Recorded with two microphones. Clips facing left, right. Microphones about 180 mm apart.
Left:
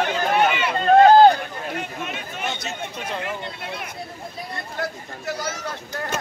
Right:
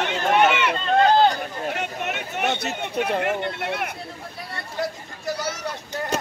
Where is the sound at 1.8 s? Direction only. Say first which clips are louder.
Right 2 dB; 70° right (ahead or behind).